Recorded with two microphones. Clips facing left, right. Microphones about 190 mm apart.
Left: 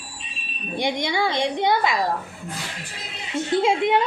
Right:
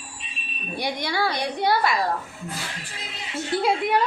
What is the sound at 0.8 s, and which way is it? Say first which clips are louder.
A woman's voice: left 3 dB; 20° left (ahead or behind).